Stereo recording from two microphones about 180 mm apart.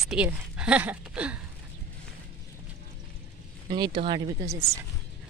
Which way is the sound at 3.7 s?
25° right (ahead or behind).